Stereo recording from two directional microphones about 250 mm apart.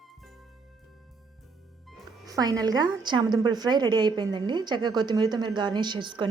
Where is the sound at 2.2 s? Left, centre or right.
Centre.